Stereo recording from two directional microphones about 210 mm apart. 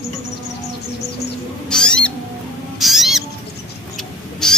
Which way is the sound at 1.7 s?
5° left (ahead or behind).